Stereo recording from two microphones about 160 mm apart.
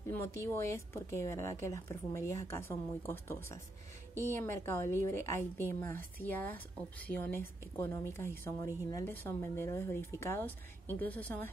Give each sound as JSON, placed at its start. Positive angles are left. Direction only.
{"t": 0.1, "sound": "a woman's voice", "side_deg": 15}